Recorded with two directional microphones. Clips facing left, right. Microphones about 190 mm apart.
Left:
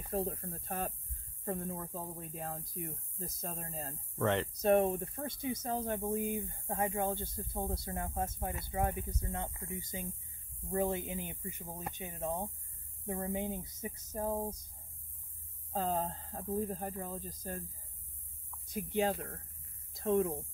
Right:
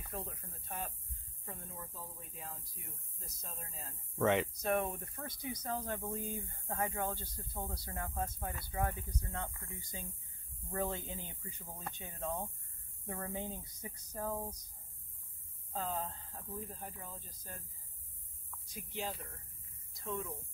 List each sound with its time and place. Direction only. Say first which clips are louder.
0.0 s speech: left 10 dB; 35° left (ahead or behind)
4.2 s speech: right 1 dB; centre (ahead or behind)
4.6 s speech: left 7 dB; 30° left (ahead or behind)
15.7 s speech: left 5 dB; 35° left (ahead or behind)
18.7 s speech: left 10 dB; 55° left (ahead or behind)
20.0 s speech: left 11 dB; 70° left (ahead or behind)